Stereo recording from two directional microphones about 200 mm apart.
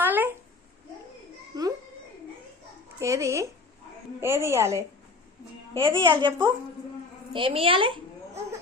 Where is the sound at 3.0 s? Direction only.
15° right (ahead or behind).